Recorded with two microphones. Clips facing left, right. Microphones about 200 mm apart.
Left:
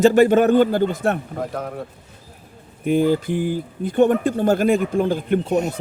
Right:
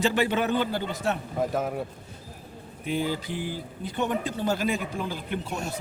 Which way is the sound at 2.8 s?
50° left (ahead or behind).